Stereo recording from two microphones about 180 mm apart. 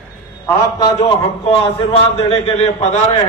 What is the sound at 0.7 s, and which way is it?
A man's voice, 25° left (ahead or behind).